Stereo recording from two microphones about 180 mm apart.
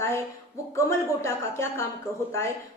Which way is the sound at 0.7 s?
15° left (ahead or behind).